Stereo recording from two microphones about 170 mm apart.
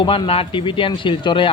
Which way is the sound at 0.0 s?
30° left (ahead or behind).